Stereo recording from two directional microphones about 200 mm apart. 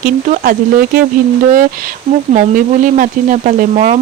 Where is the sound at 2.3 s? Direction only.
40° right (ahead or behind).